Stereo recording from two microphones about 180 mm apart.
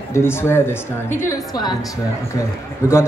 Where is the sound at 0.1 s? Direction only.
15° left (ahead or behind).